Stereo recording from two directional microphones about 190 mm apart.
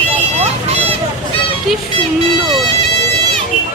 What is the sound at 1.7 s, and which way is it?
Music, centre (ahead or behind).